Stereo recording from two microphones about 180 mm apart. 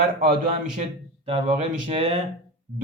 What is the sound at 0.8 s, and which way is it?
Speech, 35° right (ahead or behind).